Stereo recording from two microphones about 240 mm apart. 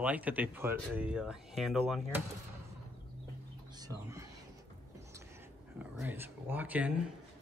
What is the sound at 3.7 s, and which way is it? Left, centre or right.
Speech, centre.